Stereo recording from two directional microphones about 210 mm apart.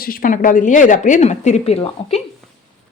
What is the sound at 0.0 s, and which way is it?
A woman's voice, 45° left (ahead or behind).